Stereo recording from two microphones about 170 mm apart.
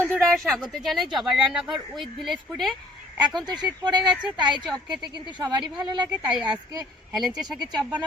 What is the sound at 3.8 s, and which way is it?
Speech, 25° right (ahead or behind).